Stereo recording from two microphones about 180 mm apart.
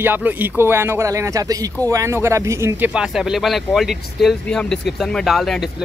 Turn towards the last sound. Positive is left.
turn(degrees=0)  # may be behind; listen again after turning